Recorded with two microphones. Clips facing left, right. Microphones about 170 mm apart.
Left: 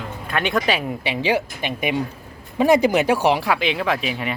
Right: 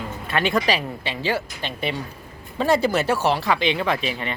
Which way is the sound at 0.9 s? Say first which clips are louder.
Left 4 dB; 15° left (ahead or behind).